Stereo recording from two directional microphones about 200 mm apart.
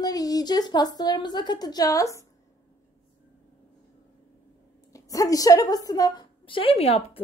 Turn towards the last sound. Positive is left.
turn(degrees=30)  # may be behind; listen again after turning